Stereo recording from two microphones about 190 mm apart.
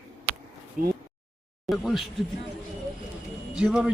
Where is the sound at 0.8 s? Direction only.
45° right (ahead or behind).